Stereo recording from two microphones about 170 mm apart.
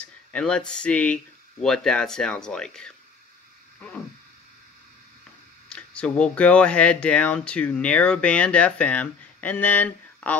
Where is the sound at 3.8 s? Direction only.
5° left (ahead or behind).